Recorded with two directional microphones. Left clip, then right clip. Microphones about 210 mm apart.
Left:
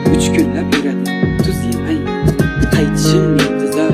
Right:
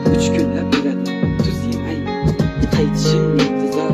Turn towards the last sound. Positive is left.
turn(degrees=45)  # may be behind; listen again after turning